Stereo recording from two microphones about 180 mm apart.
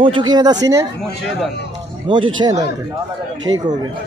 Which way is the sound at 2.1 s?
25° right (ahead or behind).